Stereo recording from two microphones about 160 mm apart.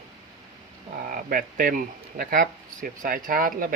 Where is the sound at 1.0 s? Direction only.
60° right (ahead or behind).